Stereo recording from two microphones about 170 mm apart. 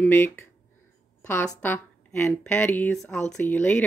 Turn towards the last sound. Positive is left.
turn(degrees=10)  # may be behind; listen again after turning